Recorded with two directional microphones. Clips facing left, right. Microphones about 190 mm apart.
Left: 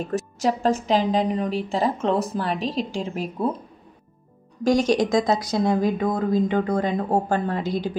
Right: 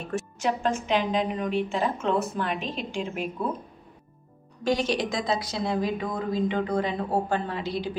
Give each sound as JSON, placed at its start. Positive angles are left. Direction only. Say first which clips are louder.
{"t": 0.1, "sound": "a woman's voice", "louder": "left 3 dB", "side_deg": 35}
{"t": 4.6, "sound": "speech", "louder": "left 6 dB", "side_deg": 45}